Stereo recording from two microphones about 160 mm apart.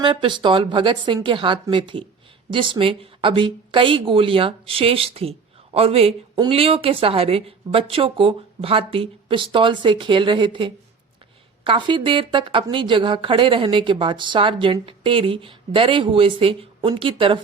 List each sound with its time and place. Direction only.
0.0 s a woman's voice: 30° right (ahead or behind)